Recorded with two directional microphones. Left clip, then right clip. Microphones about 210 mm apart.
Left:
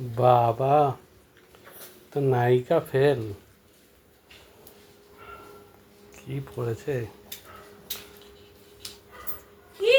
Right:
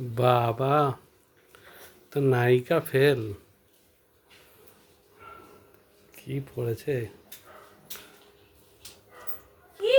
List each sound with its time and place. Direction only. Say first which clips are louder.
0.1 s speech: left 4 dB; 25° right (ahead or behind)
2.0 s speech: even; 25° right (ahead or behind)
6.1 s speech: even; 30° right (ahead or behind)